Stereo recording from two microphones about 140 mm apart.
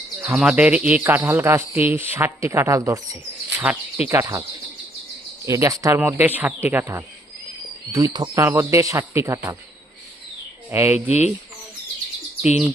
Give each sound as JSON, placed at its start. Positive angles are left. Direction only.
{"t": 0.3, "sound": "speech", "side_deg": -5}
{"t": 3.6, "sound": "speech", "side_deg": -10}
{"t": 4.2, "sound": "speech", "side_deg": -25}
{"t": 5.5, "sound": "speech", "side_deg": -25}
{"t": 10.7, "sound": "speech", "side_deg": -15}
{"t": 12.4, "sound": "chirp", "side_deg": -5}